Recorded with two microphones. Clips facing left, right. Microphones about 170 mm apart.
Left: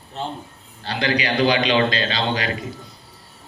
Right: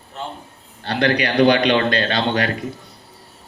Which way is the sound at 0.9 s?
60° right (ahead or behind).